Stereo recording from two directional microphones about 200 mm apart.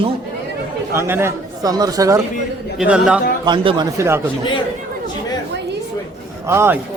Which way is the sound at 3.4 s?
25° right (ahead or behind).